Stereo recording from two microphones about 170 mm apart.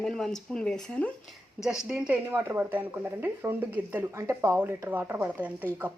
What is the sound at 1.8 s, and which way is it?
Speech, 5° right (ahead or behind).